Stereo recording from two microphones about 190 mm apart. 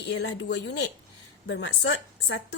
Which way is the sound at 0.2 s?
65° left (ahead or behind).